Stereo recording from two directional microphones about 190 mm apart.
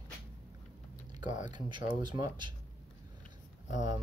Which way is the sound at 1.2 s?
25° right (ahead or behind).